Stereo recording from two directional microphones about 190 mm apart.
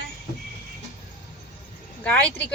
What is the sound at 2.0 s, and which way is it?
Speech, 10° left (ahead or behind).